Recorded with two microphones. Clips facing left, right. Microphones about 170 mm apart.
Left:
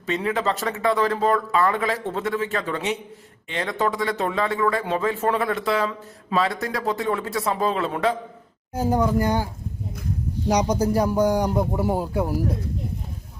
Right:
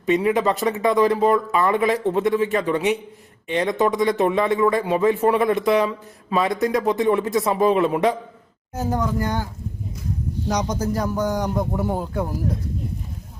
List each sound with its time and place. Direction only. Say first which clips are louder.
0.0 s a man's voice: right 5 dB; 15° right (ahead or behind)
8.7 s speech: left 3 dB; 10° left (ahead or behind)
10.5 s speech: left 3 dB; 10° left (ahead or behind)